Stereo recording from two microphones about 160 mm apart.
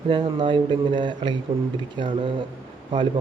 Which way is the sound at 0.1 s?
30° right (ahead or behind).